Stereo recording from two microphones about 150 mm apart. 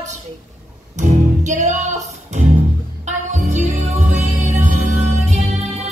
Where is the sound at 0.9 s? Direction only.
50° right (ahead or behind).